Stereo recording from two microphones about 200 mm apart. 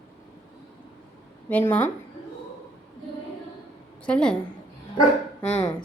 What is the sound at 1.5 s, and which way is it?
Speech, 10° left (ahead or behind).